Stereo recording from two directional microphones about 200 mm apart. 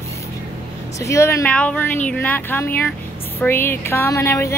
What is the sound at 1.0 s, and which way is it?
Speech, 15° left (ahead or behind).